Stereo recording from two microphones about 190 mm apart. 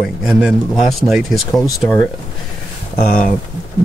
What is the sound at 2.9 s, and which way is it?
Speech, 40° left (ahead or behind).